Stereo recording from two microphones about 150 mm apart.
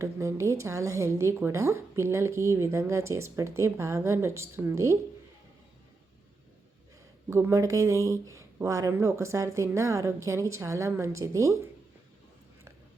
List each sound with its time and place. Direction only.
0.0 s a woman's voice: 20° right (ahead or behind)
7.3 s a woman's voice: 20° right (ahead or behind)